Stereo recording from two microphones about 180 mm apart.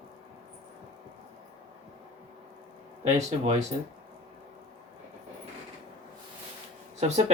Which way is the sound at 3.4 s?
35° right (ahead or behind).